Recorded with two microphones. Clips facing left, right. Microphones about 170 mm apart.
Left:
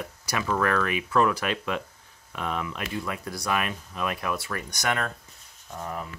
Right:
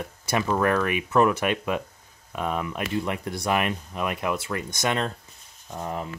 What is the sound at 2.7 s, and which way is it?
Speech, 20° right (ahead or behind).